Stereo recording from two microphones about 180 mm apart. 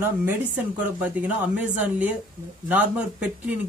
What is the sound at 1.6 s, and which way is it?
Speech, 10° right (ahead or behind).